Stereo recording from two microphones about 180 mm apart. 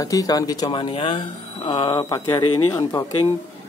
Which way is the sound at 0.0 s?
20° left (ahead or behind).